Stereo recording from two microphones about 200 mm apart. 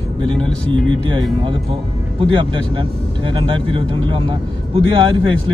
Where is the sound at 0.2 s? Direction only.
25° right (ahead or behind).